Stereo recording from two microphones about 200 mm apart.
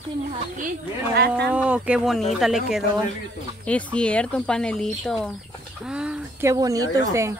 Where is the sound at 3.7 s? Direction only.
5° left (ahead or behind).